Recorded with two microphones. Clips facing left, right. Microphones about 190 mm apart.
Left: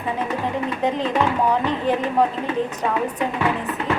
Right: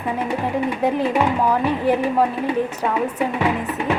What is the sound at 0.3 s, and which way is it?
Speech, 10° right (ahead or behind).